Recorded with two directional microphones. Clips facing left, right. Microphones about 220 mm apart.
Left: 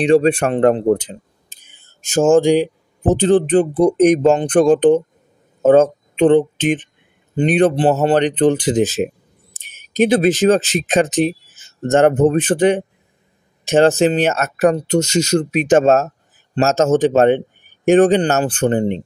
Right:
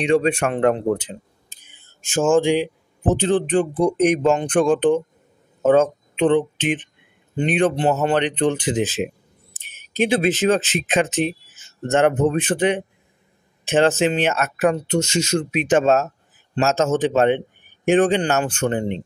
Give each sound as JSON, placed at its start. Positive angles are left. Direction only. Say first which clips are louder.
{"t": 0.0, "sound": "speech", "louder": "left 5 dB", "side_deg": 35}